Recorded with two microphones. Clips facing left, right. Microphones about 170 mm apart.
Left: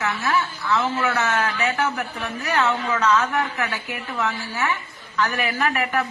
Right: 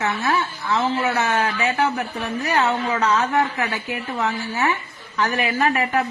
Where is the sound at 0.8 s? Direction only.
20° right (ahead or behind).